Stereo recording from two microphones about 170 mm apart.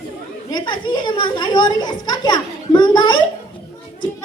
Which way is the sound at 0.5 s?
30° left (ahead or behind).